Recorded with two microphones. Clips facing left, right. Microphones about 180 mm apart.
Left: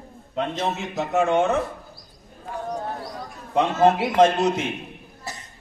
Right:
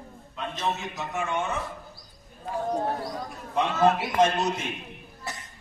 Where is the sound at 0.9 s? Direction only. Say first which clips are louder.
Left 10 dB; 75° left (ahead or behind).